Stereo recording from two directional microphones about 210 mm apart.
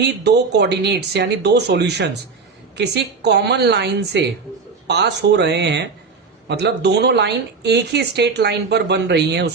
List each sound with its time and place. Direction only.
0.0 s speech: 55° right (ahead or behind)